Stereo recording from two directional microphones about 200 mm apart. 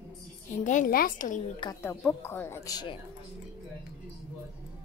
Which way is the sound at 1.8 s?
10° left (ahead or behind).